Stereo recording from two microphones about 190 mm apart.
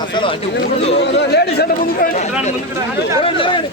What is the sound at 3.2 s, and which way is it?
Speech, 25° left (ahead or behind).